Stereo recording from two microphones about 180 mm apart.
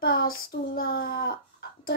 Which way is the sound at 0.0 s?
60° left (ahead or behind).